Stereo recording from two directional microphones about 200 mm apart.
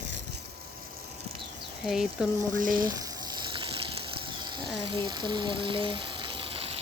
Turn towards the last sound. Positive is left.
turn(degrees=-30)  # may be behind; listen again after turning